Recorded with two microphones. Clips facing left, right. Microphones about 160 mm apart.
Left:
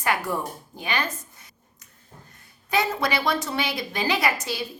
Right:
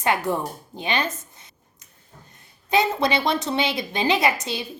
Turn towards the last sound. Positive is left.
turn(degrees=-20)  # may be behind; listen again after turning